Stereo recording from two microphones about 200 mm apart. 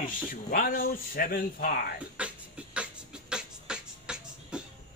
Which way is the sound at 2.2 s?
5° right (ahead or behind).